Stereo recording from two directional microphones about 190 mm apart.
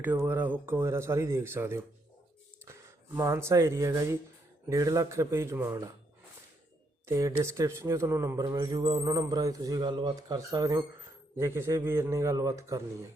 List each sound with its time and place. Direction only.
0.0 s a man's voice: 10° right (ahead or behind)
3.2 s a man's voice: 15° right (ahead or behind)
7.1 s a man's voice: 15° right (ahead or behind)